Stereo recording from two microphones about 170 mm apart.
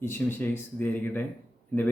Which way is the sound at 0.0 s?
10° left (ahead or behind).